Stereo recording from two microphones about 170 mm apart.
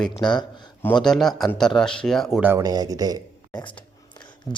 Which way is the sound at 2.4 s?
20° right (ahead or behind).